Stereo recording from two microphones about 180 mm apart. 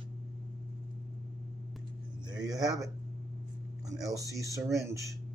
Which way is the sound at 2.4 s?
20° right (ahead or behind).